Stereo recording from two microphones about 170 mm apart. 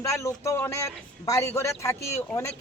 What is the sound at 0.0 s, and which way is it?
Speech, 20° left (ahead or behind).